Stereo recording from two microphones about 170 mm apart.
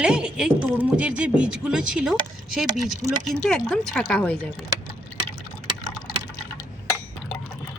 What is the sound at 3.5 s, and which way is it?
Speech, 5° left (ahead or behind).